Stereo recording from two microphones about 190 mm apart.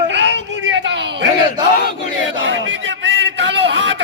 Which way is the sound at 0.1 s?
70° right (ahead or behind).